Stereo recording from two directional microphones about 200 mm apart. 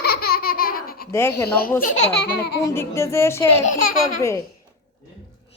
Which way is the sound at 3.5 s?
40° left (ahead or behind).